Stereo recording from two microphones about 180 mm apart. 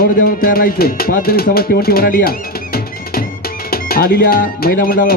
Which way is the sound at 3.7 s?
55° left (ahead or behind).